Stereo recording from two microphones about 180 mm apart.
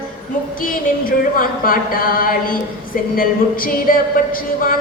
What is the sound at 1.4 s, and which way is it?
Speech, 50° left (ahead or behind).